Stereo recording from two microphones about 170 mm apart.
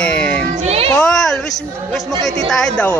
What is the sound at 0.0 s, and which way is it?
Cat, 5° left (ahead or behind).